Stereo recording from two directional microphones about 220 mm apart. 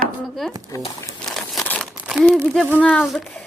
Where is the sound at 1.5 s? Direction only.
5° left (ahead or behind).